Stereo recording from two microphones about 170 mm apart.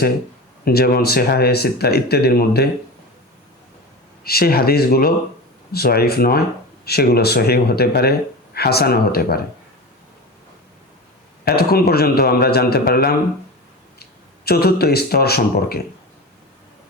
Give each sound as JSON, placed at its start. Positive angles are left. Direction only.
{"t": 0.6, "sound": "speech", "side_deg": 65}
{"t": 4.2, "sound": "a man's voice", "side_deg": 65}
{"t": 11.4, "sound": "a man's voice", "side_deg": 65}